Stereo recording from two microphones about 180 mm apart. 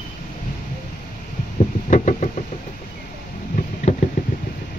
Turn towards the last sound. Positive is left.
turn(degrees=40)  # may be behind; listen again after turning